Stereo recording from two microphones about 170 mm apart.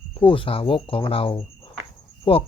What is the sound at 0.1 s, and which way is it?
Speech, 30° left (ahead or behind).